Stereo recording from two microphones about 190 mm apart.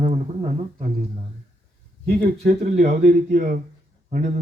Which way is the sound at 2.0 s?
45° right (ahead or behind).